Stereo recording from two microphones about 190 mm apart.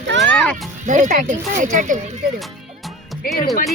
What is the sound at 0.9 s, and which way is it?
Speech, 40° right (ahead or behind).